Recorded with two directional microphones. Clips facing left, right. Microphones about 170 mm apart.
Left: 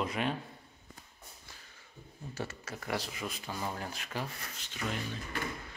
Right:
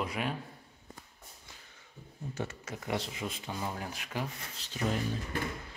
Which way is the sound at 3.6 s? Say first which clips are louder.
Even; 10° right (ahead or behind).